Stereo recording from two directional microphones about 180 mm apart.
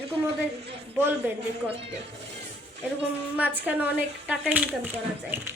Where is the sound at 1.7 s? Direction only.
35° right (ahead or behind).